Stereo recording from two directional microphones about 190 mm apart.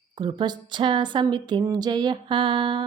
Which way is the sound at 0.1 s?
25° right (ahead or behind).